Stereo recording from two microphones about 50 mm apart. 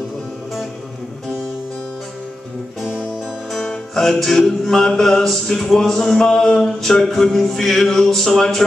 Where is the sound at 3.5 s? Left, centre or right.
Centre.